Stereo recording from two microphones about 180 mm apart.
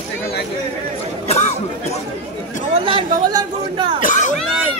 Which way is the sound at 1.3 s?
40° left (ahead or behind).